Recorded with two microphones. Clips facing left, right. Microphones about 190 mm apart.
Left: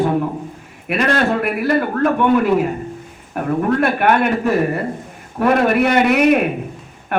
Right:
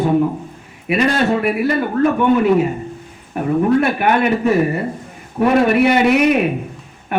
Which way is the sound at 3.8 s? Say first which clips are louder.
Even; centre (ahead or behind).